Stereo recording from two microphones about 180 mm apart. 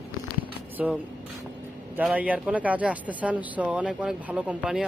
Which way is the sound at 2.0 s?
10° right (ahead or behind).